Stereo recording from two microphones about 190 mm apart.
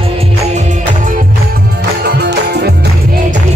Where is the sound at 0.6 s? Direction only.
45° right (ahead or behind).